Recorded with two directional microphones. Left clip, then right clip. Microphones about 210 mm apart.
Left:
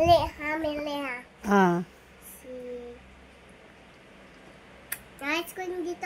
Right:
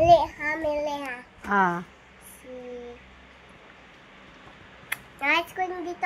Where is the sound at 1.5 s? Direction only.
40° left (ahead or behind).